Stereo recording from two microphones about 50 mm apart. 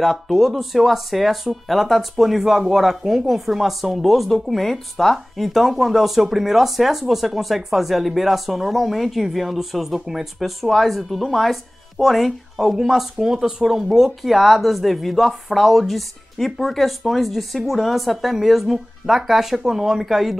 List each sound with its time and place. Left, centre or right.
0.0 s speech: centre